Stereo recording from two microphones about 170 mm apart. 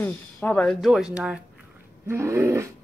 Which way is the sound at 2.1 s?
15° right (ahead or behind).